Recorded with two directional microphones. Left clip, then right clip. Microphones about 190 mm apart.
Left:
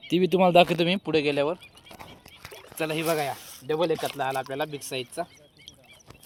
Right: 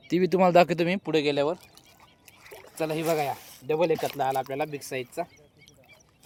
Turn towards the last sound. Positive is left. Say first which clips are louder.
# even
turn(degrees=15)  # may be behind; listen again after turning